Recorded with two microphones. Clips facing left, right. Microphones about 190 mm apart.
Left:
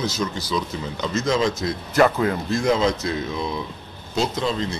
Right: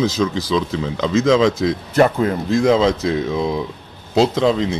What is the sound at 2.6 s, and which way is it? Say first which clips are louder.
Speech: right 5 dB; 90° right.